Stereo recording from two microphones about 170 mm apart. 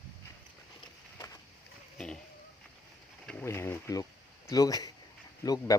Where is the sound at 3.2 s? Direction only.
10° left (ahead or behind).